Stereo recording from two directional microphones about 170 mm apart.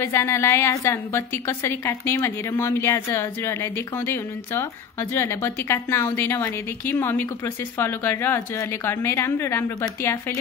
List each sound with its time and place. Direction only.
0.0 s a woman's voice: 15° left (ahead or behind)